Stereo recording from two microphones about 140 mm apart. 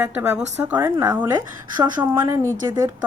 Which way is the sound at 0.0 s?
15° right (ahead or behind).